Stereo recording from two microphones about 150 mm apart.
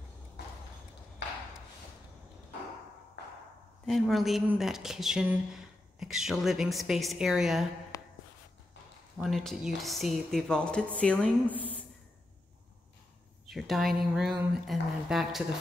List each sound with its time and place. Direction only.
3.8 s speech: centre (ahead or behind)
7.9 s a sound: 25° left (ahead or behind)
9.2 s speech: centre (ahead or behind)
13.5 s speech: centre (ahead or behind)